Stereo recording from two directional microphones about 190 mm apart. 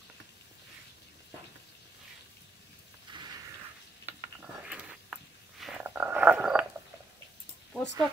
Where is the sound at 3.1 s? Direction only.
25° right (ahead or behind).